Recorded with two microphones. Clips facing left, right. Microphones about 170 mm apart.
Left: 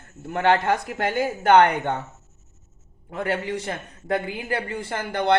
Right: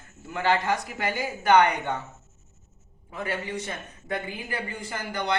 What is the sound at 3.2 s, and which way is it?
A woman's voice, 65° left (ahead or behind).